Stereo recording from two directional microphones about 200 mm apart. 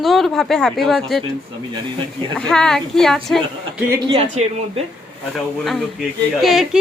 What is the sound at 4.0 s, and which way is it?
Speech, 25° right (ahead or behind).